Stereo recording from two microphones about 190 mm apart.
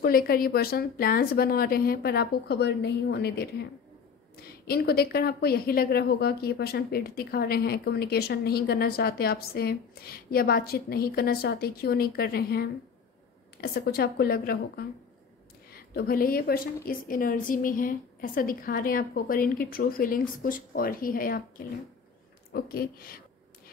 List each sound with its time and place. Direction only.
0.0 s a woman's voice: 50° left (ahead or behind)
4.6 s a woman's voice: 55° left (ahead or behind)